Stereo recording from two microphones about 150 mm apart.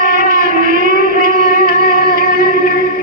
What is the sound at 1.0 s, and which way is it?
Music, 70° right (ahead or behind).